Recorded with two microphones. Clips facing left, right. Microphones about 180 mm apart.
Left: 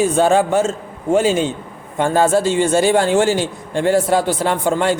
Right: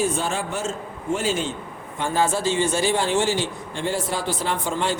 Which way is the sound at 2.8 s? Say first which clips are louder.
Left 7 dB; 55° left (ahead or behind).